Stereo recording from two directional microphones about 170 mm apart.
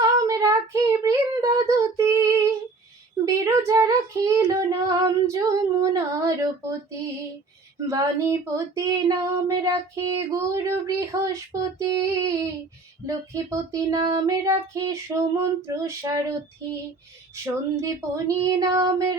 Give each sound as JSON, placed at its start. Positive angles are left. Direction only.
{"t": 0.3, "sound": "child singing", "side_deg": -20}
{"t": 3.2, "sound": "female singing", "side_deg": -20}
{"t": 7.8, "sound": "female singing", "side_deg": -20}
{"t": 17.4, "sound": "female singing", "side_deg": -15}